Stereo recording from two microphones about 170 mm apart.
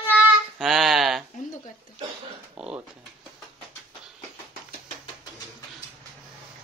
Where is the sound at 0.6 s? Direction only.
Centre (ahead or behind).